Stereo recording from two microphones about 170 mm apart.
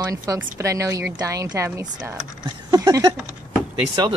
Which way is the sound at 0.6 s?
20° right (ahead or behind).